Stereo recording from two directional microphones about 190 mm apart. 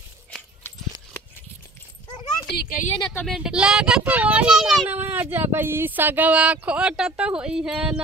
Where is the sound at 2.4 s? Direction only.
50° left (ahead or behind).